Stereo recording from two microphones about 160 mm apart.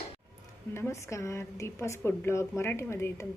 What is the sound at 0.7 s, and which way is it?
A woman's voice, 15° left (ahead or behind).